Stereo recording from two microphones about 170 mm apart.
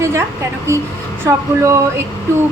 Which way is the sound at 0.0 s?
15° right (ahead or behind).